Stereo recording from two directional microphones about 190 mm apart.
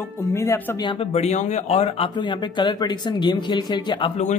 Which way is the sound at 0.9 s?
30° left (ahead or behind).